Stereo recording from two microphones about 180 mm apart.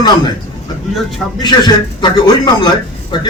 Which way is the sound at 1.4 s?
25° left (ahead or behind).